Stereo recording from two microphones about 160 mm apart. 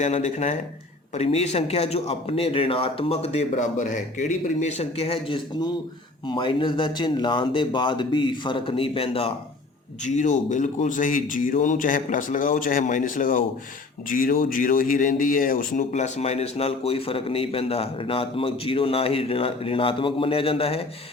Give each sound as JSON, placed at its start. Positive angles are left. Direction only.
{"t": 0.0, "sound": "speech", "side_deg": 45}
{"t": 10.0, "sound": "speech", "side_deg": 50}